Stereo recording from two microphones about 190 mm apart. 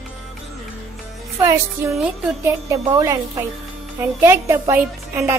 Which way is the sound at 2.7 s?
15° right (ahead or behind).